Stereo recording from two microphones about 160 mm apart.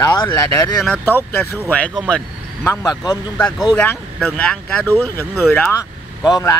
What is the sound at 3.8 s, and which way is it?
Speech, 5° left (ahead or behind).